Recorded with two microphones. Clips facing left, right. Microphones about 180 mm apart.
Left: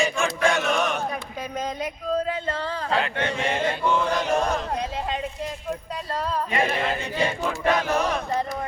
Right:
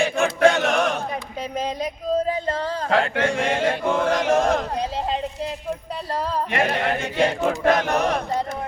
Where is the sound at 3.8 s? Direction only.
50° right (ahead or behind).